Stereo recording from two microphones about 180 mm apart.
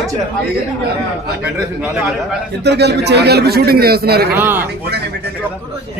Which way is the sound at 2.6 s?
70° right (ahead or behind).